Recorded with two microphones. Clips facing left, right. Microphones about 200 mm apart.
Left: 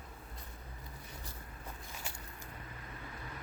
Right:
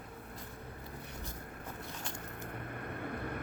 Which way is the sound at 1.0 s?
60° right (ahead or behind).